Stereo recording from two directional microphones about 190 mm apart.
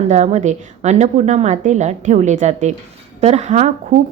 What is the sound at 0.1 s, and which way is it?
A woman's voice, 35° right (ahead or behind).